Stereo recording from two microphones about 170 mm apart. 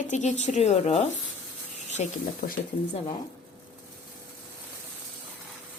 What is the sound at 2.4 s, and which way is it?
Speech, 65° left (ahead or behind).